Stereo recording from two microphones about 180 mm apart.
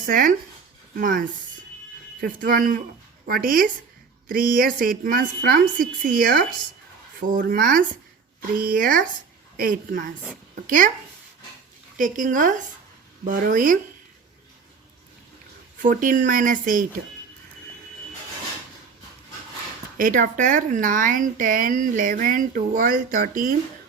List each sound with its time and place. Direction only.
0.0 s speech: 50° right (ahead or behind)
11.9 s speech: 45° right (ahead or behind)
15.8 s speech: 45° right (ahead or behind)
20.0 s speech: 50° right (ahead or behind)